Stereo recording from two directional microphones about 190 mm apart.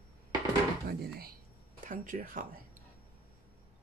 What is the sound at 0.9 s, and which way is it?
Speech, 55° right (ahead or behind).